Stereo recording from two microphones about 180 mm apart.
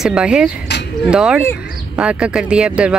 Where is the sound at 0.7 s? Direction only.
75° left (ahead or behind).